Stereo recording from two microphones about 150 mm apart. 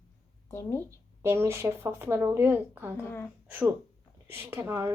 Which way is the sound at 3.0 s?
15° left (ahead or behind).